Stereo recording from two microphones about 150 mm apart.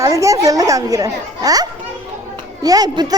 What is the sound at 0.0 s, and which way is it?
A woman's voice, 20° right (ahead or behind).